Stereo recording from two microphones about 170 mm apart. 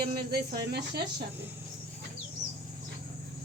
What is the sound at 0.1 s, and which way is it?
Speech, 65° right (ahead or behind).